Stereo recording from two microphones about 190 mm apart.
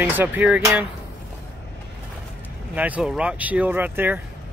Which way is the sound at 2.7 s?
10° right (ahead or behind).